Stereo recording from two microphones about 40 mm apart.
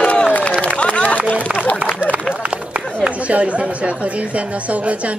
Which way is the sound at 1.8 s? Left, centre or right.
Right.